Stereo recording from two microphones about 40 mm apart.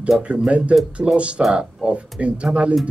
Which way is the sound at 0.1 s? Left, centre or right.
Centre.